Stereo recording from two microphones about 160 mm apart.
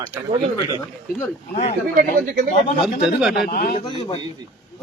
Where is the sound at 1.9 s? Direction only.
65° right (ahead or behind).